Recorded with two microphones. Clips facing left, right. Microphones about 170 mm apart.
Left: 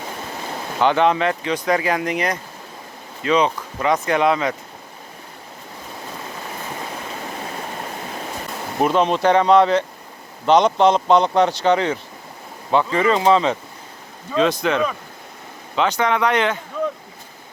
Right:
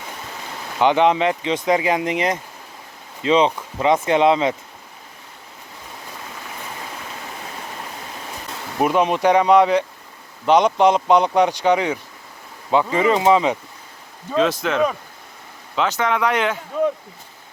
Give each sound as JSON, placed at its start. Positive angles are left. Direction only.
{"t": 0.8, "sound": "speech", "side_deg": -15}
{"t": 8.8, "sound": "speech", "side_deg": -10}
{"t": 14.3, "sound": "a man's voice", "side_deg": 0}